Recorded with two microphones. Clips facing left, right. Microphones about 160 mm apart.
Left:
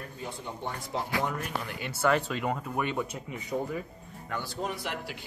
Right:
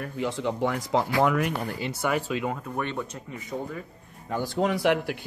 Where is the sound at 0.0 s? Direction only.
90° right.